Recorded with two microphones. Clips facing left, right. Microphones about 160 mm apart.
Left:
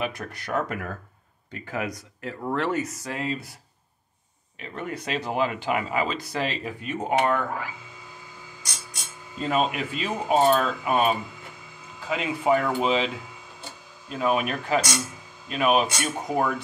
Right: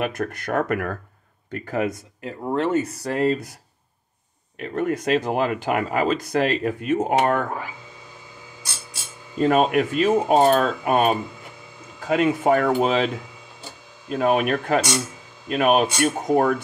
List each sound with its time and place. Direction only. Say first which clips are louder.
0.0 s speech: right 5 dB; 50° right (ahead or behind)
1.5 s speech: right 6 dB; 40° right (ahead or behind)
1.9 s speech: right 4 dB; 20° right (ahead or behind); by 3.4 s 45° right (ahead or behind)
4.6 s speech: right 9 dB; 50° right (ahead or behind)
9.4 s speech: right 7 dB; 55° right (ahead or behind)